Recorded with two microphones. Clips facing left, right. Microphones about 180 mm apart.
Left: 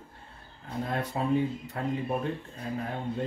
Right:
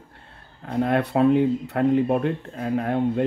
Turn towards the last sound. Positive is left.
turn(degrees=-70)  # may be behind; listen again after turning